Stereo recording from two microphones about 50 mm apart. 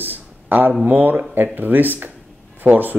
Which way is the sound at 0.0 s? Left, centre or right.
Right.